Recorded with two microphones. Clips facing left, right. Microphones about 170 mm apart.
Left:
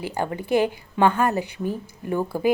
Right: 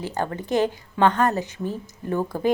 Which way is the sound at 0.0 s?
10° left (ahead or behind).